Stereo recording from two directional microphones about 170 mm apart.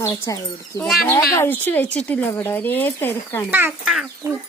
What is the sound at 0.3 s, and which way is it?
A child's voice, 20° left (ahead or behind).